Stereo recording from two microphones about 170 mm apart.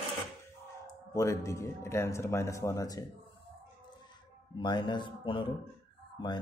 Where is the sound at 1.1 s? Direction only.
20° left (ahead or behind).